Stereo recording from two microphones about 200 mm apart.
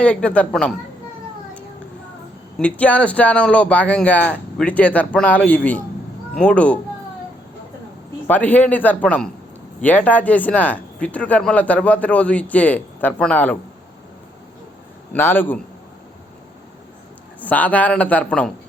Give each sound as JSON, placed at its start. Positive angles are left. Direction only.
{"t": 0.0, "sound": "a woman's voice", "side_deg": 5}
{"t": 2.6, "sound": "a woman's voice", "side_deg": 5}
{"t": 8.3, "sound": "speech", "side_deg": 10}
{"t": 15.1, "sound": "speech", "side_deg": 10}
{"t": 17.4, "sound": "speech", "side_deg": 10}